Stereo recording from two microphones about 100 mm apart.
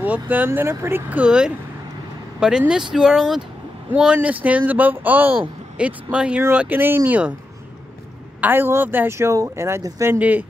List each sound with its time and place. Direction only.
0.0 s speech: 15° right (ahead or behind)
8.4 s speech: 20° right (ahead or behind)
10.1 s speech: 15° right (ahead or behind)